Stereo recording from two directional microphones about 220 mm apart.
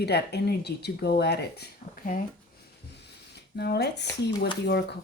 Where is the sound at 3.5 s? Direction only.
50° left (ahead or behind).